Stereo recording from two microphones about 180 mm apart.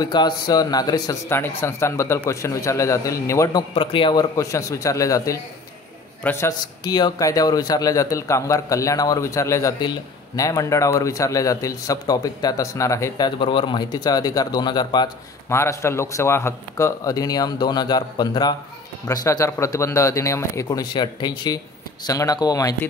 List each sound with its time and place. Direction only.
0.0 s a man's voice: 20° left (ahead or behind)
3.7 s a man's voice: 30° left (ahead or behind)